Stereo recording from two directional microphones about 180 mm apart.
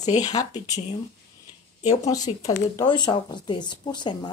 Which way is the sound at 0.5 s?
40° left (ahead or behind).